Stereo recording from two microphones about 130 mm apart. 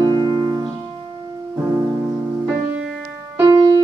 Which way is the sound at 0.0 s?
35° right (ahead or behind).